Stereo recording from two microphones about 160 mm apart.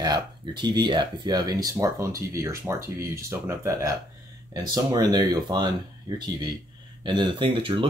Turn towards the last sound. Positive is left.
turn(degrees=-35)  # may be behind; listen again after turning